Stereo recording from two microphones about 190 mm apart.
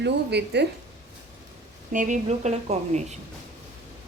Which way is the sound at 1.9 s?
40° right (ahead or behind).